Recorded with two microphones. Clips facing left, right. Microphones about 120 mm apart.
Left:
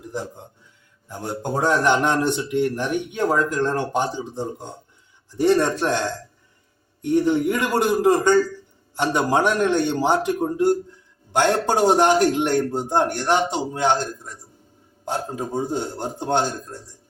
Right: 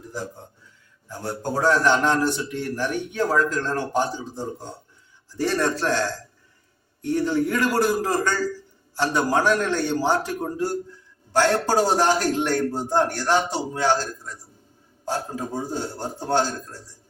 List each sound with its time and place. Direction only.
1.0 s a man's voice: 20° left (ahead or behind)